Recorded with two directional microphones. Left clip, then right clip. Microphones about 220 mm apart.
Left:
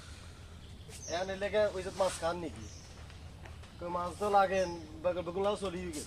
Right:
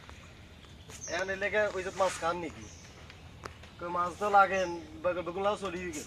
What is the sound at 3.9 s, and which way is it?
Speech, 5° right (ahead or behind).